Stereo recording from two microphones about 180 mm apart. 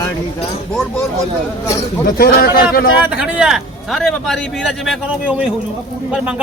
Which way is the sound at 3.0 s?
5° right (ahead or behind).